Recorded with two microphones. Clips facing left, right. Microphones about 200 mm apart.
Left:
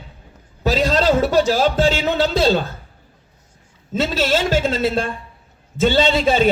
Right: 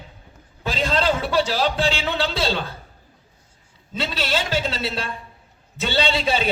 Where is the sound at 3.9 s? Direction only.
45° left (ahead or behind).